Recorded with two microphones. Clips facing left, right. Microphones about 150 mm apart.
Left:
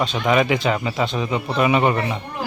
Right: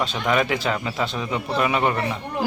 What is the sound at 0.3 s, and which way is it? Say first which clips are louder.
A man's voice: left 4 dB; 5° left (ahead or behind).